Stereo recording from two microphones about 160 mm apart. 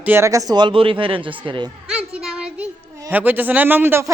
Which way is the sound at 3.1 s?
10° right (ahead or behind).